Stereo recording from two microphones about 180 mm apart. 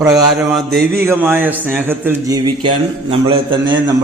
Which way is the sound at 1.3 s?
10° right (ahead or behind).